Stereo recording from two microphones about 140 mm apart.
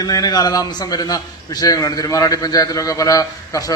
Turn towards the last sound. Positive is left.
turn(degrees=25)  # may be behind; listen again after turning